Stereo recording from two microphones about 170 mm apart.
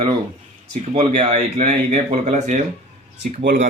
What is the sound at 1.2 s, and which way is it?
Speech, 40° right (ahead or behind).